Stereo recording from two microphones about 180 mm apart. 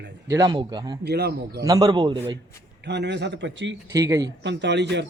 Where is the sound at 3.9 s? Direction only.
20° right (ahead or behind).